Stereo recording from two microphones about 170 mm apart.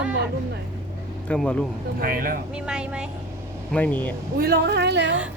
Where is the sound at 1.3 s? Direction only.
5° left (ahead or behind).